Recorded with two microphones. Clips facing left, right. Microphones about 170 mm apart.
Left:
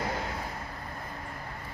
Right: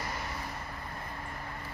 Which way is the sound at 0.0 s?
60° left (ahead or behind).